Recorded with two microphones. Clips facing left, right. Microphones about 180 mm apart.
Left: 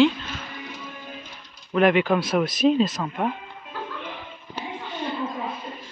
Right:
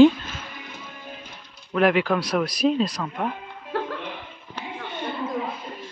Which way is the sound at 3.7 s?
75° right (ahead or behind).